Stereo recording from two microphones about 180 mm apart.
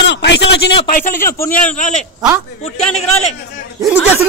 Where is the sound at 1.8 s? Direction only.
40° left (ahead or behind).